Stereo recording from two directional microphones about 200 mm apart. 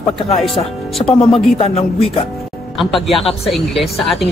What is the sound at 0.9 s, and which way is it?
Speech, 5° left (ahead or behind).